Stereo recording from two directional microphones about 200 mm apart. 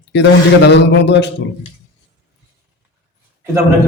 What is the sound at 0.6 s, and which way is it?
Speech, 60° left (ahead or behind).